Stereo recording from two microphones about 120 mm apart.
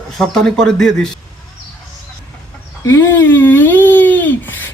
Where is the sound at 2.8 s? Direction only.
20° left (ahead or behind).